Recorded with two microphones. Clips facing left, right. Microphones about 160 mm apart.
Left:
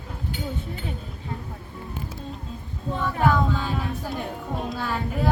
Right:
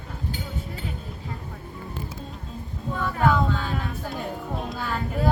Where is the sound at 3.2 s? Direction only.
5° left (ahead or behind).